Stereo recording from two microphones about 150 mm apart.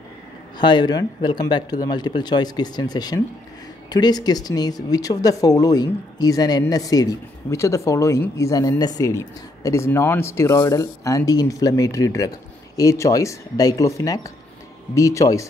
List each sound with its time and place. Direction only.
0.6 s speech: 30° left (ahead or behind)